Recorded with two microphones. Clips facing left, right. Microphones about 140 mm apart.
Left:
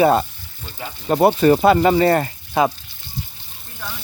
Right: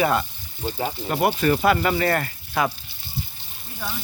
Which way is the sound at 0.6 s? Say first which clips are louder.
Right 7 dB; 35° right (ahead or behind).